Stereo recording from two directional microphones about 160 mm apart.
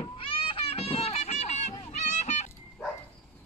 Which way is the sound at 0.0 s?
35° left (ahead or behind).